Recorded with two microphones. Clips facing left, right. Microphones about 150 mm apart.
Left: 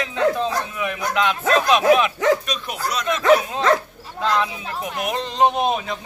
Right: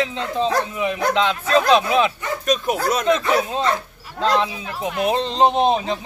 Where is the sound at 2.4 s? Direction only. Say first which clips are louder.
Right 7 dB; 45° right (ahead or behind).